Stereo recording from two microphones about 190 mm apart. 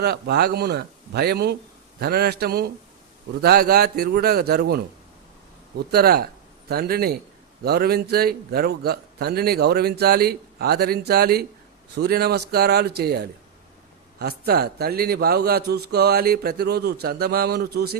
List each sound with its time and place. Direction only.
0.0 s a man's voice: 60° right (ahead or behind)